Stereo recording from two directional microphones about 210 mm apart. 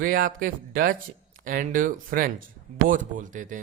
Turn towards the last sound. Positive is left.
turn(degrees=-40)  # may be behind; listen again after turning